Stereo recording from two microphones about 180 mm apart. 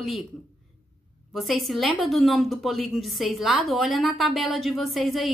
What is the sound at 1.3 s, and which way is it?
A woman's voice, centre (ahead or behind).